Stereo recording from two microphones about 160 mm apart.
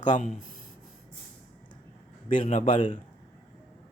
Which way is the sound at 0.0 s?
50° left (ahead or behind).